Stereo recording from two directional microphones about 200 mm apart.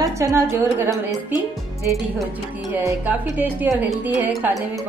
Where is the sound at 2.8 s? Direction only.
10° right (ahead or behind).